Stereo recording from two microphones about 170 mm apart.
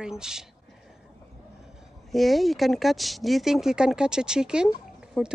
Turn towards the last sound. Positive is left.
turn(degrees=0)  # may be behind; listen again after turning